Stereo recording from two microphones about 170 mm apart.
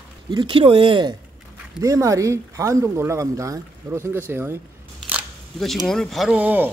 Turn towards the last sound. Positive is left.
turn(degrees=-10)  # may be behind; listen again after turning